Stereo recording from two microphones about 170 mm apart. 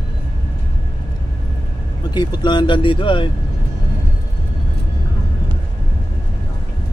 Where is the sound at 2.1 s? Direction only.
25° left (ahead or behind).